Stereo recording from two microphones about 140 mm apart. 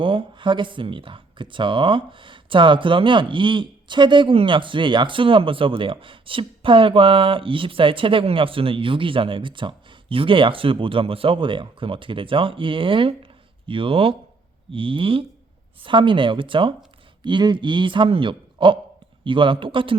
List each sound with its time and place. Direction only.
0.0 s speech: 40° right (ahead or behind)